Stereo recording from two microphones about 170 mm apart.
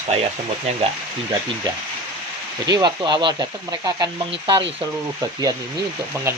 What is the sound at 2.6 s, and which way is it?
Speech, 25° right (ahead or behind).